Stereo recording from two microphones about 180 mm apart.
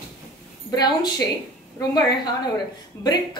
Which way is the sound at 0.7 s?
25° left (ahead or behind).